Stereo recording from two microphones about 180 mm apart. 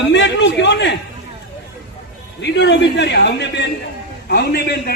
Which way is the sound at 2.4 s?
75° left (ahead or behind).